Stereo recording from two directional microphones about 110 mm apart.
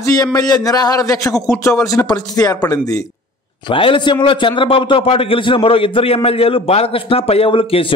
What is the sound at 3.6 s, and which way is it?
A man's voice, 50° left (ahead or behind).